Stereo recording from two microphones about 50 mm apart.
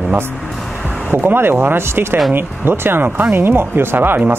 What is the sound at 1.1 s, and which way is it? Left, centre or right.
Speech, right.